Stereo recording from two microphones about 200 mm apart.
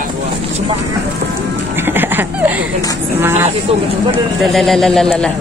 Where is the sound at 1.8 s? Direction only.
10° right (ahead or behind).